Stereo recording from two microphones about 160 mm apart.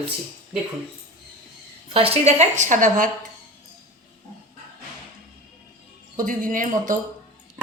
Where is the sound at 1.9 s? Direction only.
40° right (ahead or behind); by 3.1 s 55° right (ahead or behind).